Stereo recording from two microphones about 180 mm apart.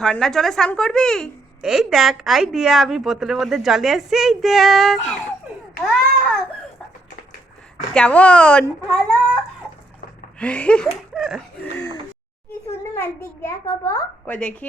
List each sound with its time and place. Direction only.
0.0 s a woman's voice: centre (ahead or behind)
7.9 s a child's voice: 5° left (ahead or behind)
10.4 s a child's voice: 5° left (ahead or behind)
11.1 s chuckle: centre (ahead or behind)
12.9 s a child's voice: 15° left (ahead or behind)